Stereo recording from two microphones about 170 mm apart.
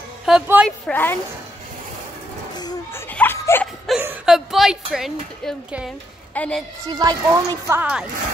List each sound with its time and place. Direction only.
0.2 s a woman's voice: 5° right (ahead or behind)
0.7 s a woman's voice: 10° left (ahead or behind)
2.5 s a sound: 25° left (ahead or behind)
3.1 s snicker: 10° left (ahead or behind)
3.9 s speech: centre (ahead or behind)
6.3 s a woman's voice: 10° left (ahead or behind)
6.9 s speech: 25° right (ahead or behind)